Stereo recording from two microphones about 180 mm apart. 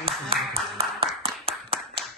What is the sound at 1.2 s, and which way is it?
Clapping, 30° right (ahead or behind).